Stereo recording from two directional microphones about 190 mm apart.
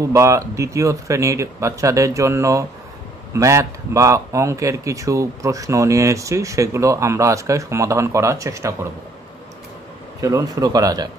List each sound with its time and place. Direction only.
0.0 s speech: 15° right (ahead or behind)
10.2 s speech: 20° right (ahead or behind)